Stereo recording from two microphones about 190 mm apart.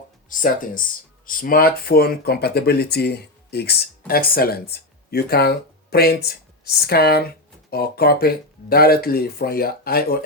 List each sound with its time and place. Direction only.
0.3 s speech: 45° left (ahead or behind)